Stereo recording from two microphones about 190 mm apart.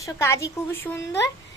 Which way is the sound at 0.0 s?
15° left (ahead or behind).